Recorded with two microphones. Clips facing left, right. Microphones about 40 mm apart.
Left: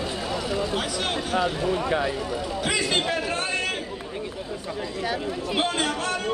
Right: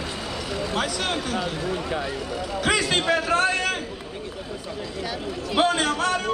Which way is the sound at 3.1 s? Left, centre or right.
Right.